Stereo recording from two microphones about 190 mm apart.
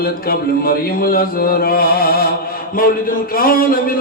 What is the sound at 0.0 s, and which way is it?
A man's voice, 50° left (ahead or behind).